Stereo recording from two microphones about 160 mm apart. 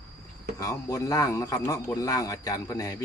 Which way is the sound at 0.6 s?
20° left (ahead or behind).